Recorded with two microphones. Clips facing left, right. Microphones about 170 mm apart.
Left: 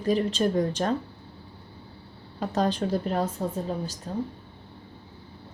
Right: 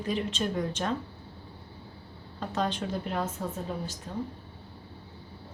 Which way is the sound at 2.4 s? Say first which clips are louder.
Left 5 dB; 40° left (ahead or behind).